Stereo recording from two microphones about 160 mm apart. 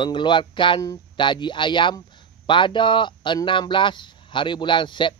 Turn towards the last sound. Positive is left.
turn(degrees=30)  # may be behind; listen again after turning